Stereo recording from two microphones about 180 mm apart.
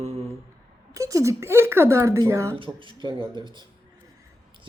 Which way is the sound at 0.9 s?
20° right (ahead or behind).